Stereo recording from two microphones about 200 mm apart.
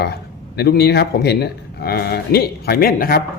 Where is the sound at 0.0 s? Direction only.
55° left (ahead or behind).